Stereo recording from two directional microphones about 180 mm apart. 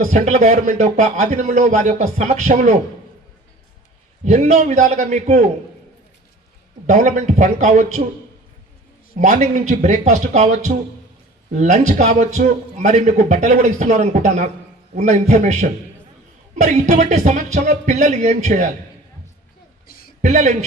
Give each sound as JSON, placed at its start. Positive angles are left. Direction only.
{"t": 0.1, "sound": "a man's voice", "side_deg": -40}
{"t": 4.2, "sound": "a man's voice", "side_deg": -40}
{"t": 6.8, "sound": "a man's voice", "side_deg": -45}
{"t": 9.1, "sound": "a man's voice", "side_deg": -45}
{"t": 19.9, "sound": "a sound", "side_deg": 55}
{"t": 20.2, "sound": "a man's voice", "side_deg": -40}